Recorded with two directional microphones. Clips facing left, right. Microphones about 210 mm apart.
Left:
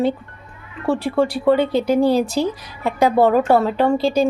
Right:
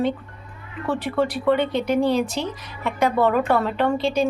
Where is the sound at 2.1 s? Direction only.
35° left (ahead or behind).